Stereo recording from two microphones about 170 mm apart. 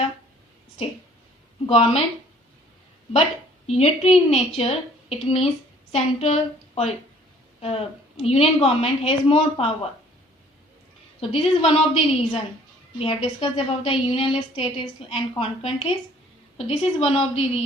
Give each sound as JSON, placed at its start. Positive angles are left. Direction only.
{"t": 1.6, "sound": "a woman's voice", "side_deg": 35}
{"t": 3.7, "sound": "a woman's voice", "side_deg": 35}
{"t": 11.2, "sound": "a woman's voice", "side_deg": 35}